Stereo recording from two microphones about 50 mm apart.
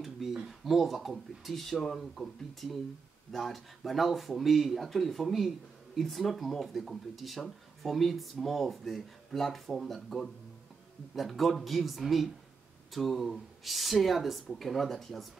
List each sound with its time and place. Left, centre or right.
0.3 s speech: centre